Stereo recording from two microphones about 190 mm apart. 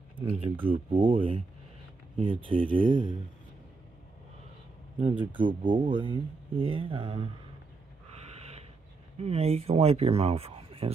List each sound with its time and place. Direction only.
0.2 s speech: 30° right (ahead or behind)
5.4 s speech: 25° right (ahead or behind)
8.4 s a sound: 35° right (ahead or behind)
9.2 s speech: 35° right (ahead or behind)